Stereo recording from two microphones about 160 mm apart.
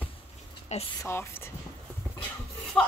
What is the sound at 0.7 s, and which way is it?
Speech, 45° left (ahead or behind).